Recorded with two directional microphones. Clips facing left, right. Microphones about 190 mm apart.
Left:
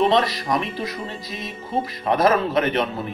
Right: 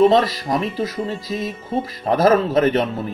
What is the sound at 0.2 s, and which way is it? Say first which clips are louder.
Speech: right 2 dB; 30° right (ahead or behind).